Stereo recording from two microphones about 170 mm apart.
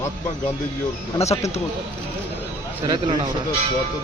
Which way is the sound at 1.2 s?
40° left (ahead or behind).